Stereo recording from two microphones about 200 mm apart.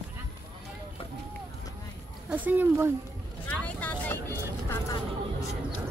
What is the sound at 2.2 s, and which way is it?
Speech, 10° right (ahead or behind).